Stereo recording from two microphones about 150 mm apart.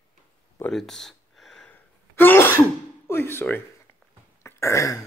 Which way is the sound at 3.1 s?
15° left (ahead or behind).